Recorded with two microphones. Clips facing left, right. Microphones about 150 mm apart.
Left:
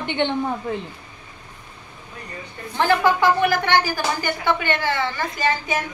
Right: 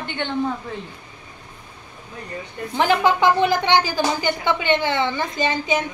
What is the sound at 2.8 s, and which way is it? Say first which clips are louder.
A woman's voice: even; 15° right (ahead or behind).